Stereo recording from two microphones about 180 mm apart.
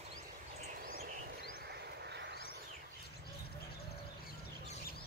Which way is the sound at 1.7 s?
70° right (ahead or behind).